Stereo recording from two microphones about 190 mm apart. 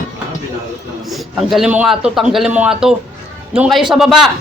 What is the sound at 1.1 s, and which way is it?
A man's voice, centre (ahead or behind).